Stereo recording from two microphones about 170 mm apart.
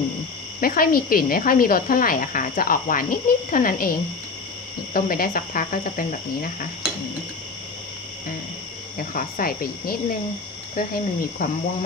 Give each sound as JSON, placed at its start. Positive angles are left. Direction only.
{"t": 0.6, "sound": "speech", "side_deg": 60}
{"t": 4.9, "sound": "speech", "side_deg": 60}
{"t": 8.9, "sound": "speech", "side_deg": 55}